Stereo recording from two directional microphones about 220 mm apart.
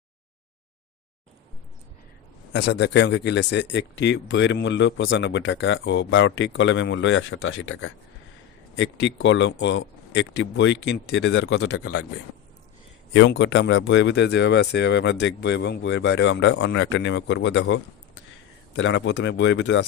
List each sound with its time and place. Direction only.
2.5 s speech: 50° left (ahead or behind)
13.1 s speech: 55° left (ahead or behind)
18.8 s speech: 55° left (ahead or behind)